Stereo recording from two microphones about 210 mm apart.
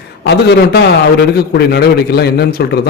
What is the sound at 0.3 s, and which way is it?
A man's voice, 50° left (ahead or behind).